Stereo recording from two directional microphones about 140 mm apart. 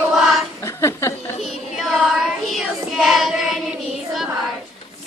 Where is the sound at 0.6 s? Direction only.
20° left (ahead or behind).